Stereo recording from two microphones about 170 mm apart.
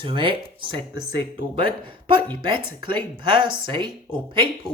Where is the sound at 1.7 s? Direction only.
30° right (ahead or behind).